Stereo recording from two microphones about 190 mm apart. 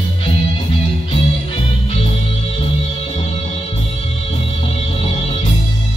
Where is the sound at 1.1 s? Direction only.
30° left (ahead or behind).